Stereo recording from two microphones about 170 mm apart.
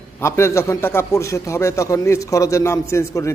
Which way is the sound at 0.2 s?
15° left (ahead or behind).